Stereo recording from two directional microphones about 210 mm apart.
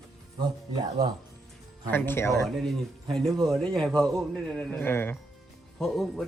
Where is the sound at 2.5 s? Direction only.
Centre (ahead or behind).